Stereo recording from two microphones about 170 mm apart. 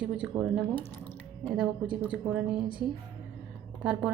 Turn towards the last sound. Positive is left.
turn(degrees=-5)  # may be behind; listen again after turning